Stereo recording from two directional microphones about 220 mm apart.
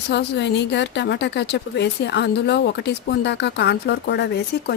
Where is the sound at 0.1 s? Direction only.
50° left (ahead or behind).